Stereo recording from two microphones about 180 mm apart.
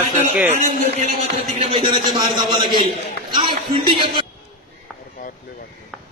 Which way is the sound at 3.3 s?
25° right (ahead or behind).